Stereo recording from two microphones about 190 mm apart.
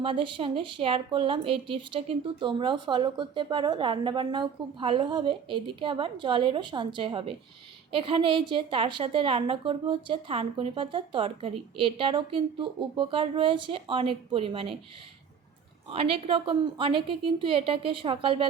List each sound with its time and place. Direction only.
0.0 s a woman's voice: 25° right (ahead or behind)
15.9 s a woman's voice: 30° right (ahead or behind)